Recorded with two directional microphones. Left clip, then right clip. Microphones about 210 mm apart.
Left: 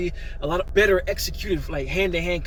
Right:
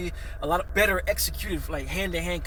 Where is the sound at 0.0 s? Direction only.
15° right (ahead or behind).